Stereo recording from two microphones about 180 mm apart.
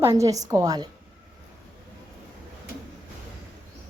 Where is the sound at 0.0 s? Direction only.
15° right (ahead or behind).